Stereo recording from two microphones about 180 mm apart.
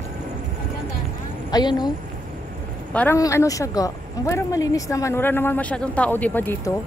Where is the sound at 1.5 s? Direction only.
25° left (ahead or behind).